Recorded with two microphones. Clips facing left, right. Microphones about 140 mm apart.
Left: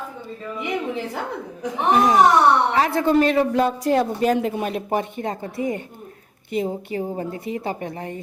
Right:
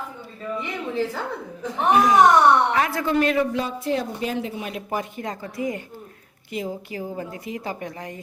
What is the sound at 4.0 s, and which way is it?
Speech, 50° left (ahead or behind).